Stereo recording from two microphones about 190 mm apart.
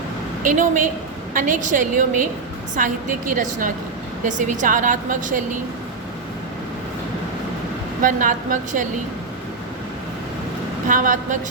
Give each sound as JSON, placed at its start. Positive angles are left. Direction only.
{"t": 0.4, "sound": "a woman's voice", "side_deg": -45}
{"t": 8.0, "sound": "a woman's voice", "side_deg": -45}
{"t": 10.8, "sound": "a woman's voice", "side_deg": -45}